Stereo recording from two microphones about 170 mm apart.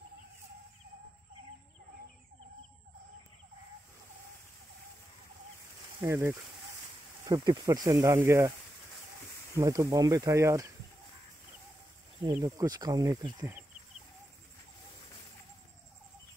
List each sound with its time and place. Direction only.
5.9 s speech: 15° right (ahead or behind)
9.6 s speech: 20° right (ahead or behind)
12.3 s speech: 20° right (ahead or behind)